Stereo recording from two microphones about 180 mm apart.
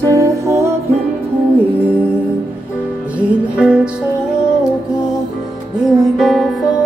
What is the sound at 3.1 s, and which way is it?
Music, 5° right (ahead or behind).